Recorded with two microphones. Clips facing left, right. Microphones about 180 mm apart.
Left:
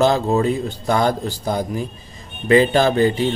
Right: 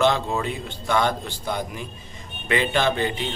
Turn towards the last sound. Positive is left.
turn(degrees=40)  # may be behind; listen again after turning